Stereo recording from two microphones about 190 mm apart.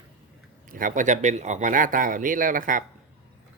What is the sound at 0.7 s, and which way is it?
Speech, 45° right (ahead or behind).